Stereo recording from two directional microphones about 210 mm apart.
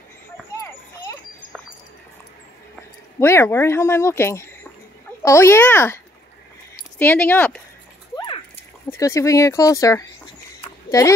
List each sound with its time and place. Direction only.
0.6 s children playing: 15° left (ahead or behind)
3.2 s speech: 10° left (ahead or behind)
7.0 s speech: 10° left (ahead or behind)
8.9 s speech: 15° left (ahead or behind)